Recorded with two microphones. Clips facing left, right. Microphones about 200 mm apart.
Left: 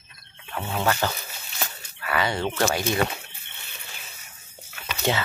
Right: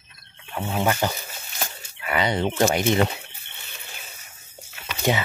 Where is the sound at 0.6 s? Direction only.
15° right (ahead or behind).